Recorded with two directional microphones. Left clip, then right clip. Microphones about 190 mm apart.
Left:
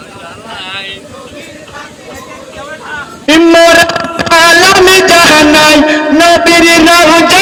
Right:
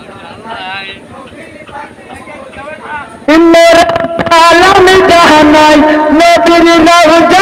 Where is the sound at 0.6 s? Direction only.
10° right (ahead or behind).